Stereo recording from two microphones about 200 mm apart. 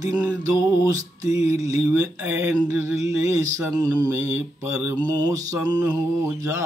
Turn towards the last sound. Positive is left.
turn(degrees=-15)  # may be behind; listen again after turning